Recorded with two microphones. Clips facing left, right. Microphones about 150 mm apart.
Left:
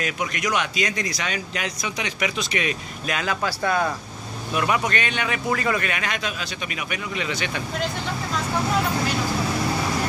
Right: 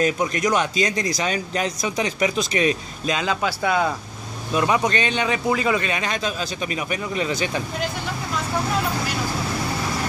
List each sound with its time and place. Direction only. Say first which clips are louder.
0.0 s speech: right 6 dB; 35° right (ahead or behind); by 3.9 s 15° right (ahead or behind)
4.6 s speech: right 3 dB; 25° right (ahead or behind)
5.5 s speech: right 1 dB; 15° right (ahead or behind); by 7.6 s 35° right (ahead or behind)